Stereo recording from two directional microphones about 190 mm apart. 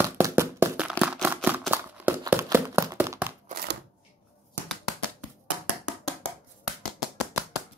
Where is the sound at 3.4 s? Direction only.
50° right (ahead or behind).